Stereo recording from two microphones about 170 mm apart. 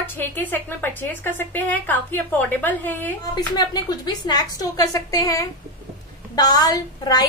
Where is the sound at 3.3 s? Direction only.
25° left (ahead or behind).